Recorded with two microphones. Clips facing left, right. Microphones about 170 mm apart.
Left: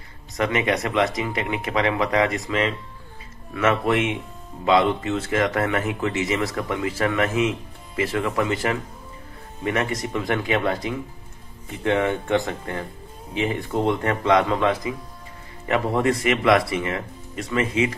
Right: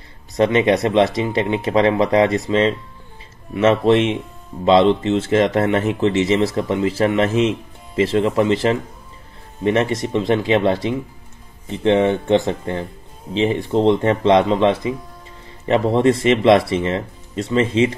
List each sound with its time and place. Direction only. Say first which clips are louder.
0.4 s speech: right 7 dB; 25° right (ahead or behind)